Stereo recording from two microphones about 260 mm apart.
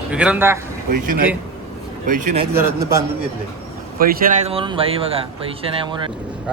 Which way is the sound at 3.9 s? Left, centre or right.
Right.